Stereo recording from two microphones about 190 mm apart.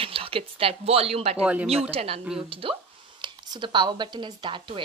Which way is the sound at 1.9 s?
30° right (ahead or behind).